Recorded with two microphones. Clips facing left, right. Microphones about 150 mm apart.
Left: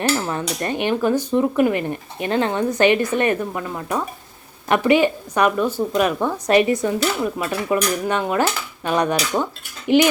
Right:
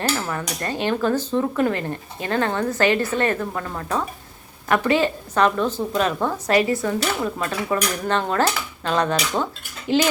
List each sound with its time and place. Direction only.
0.3 s speech: 20° left (ahead or behind)